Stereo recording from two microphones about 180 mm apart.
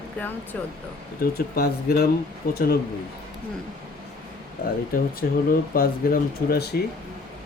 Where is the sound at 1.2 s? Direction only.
60° left (ahead or behind).